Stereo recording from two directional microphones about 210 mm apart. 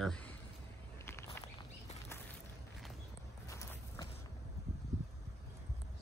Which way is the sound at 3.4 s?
15° left (ahead or behind).